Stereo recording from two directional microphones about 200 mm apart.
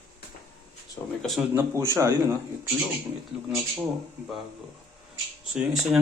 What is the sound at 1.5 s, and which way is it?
Speech, 15° right (ahead or behind).